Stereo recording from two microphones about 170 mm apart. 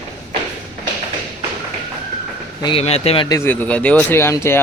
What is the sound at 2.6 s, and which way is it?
Speech, 35° left (ahead or behind).